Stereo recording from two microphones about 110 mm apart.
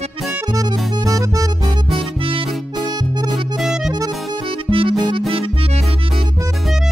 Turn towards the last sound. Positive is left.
turn(degrees=-50)  # may be behind; listen again after turning